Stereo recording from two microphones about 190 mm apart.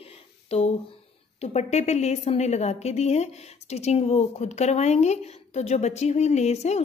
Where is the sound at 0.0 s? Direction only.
30° left (ahead or behind).